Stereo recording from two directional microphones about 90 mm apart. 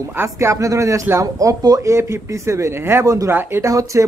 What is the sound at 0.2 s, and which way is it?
Speech, 30° right (ahead or behind).